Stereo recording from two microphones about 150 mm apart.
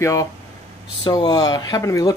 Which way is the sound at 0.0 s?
20° left (ahead or behind).